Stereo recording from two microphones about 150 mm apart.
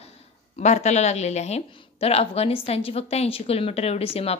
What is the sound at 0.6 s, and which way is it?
Speech, 50° left (ahead or behind).